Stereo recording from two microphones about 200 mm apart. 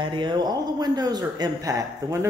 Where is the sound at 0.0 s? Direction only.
25° right (ahead or behind).